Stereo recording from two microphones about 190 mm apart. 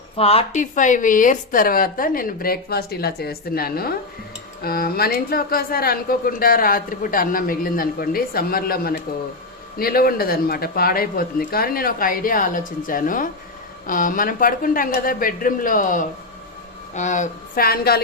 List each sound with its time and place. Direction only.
0.2 s a woman's voice: 30° left (ahead or behind); by 18.0 s 55° left (ahead or behind)